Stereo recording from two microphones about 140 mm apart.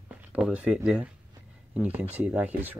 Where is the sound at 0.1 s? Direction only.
10° right (ahead or behind).